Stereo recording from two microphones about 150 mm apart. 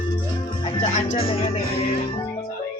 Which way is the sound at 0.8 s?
50° left (ahead or behind).